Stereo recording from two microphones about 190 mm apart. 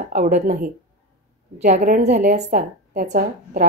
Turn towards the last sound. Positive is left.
turn(degrees=-45)  # may be behind; listen again after turning